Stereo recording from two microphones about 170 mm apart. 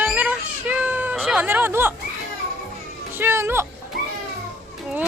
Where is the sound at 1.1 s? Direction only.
5° right (ahead or behind).